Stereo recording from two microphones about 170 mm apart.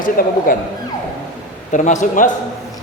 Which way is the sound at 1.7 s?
45° left (ahead or behind).